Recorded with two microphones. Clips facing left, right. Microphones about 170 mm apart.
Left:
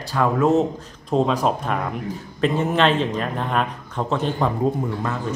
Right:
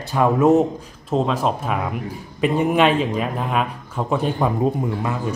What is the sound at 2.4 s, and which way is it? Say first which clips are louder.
Speech: right 2 dB; 15° right (ahead or behind).